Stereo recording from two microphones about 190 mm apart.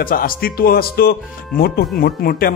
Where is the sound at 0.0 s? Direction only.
50° left (ahead or behind).